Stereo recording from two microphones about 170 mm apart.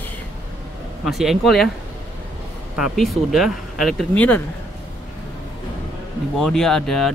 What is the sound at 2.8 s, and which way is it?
Speech, centre (ahead or behind).